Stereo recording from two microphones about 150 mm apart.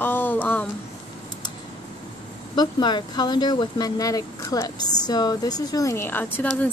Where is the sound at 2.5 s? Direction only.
30° left (ahead or behind); by 6.7 s 10° left (ahead or behind).